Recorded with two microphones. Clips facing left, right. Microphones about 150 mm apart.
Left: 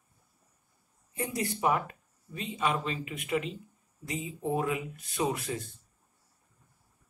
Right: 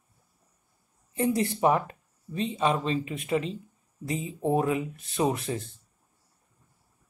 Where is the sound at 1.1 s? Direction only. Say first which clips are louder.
Right 7 dB; 25° right (ahead or behind).